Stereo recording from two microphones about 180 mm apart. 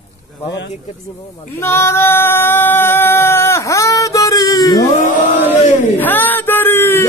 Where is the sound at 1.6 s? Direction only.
15° left (ahead or behind).